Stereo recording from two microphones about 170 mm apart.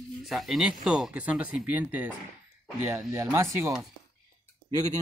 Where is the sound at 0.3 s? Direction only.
Centre (ahead or behind); by 3.7 s 15° right (ahead or behind).